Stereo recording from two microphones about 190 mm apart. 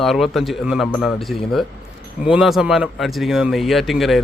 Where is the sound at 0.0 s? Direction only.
Centre (ahead or behind).